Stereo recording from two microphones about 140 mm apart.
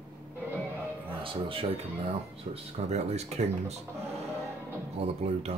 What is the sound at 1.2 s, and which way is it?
Speech, 40° right (ahead or behind).